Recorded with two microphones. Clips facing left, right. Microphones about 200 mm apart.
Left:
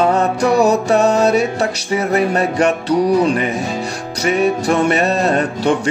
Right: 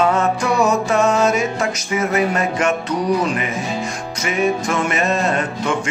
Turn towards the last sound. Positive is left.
turn(degrees=35)  # may be behind; listen again after turning